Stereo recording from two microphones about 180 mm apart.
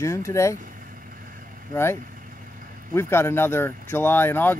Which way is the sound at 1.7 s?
15° left (ahead or behind).